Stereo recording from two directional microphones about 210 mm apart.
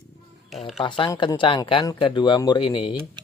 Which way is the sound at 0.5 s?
Centre (ahead or behind).